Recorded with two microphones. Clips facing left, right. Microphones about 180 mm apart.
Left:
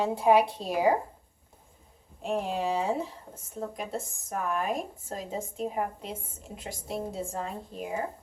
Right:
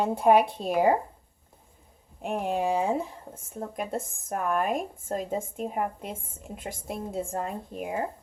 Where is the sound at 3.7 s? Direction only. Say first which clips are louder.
Right 3 dB; 50° right (ahead or behind).